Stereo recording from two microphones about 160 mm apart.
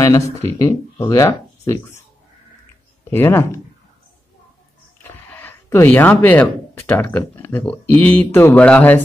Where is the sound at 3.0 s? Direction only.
15° left (ahead or behind).